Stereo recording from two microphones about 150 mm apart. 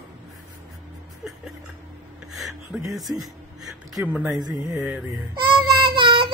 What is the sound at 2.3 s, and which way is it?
Speech, centre (ahead or behind).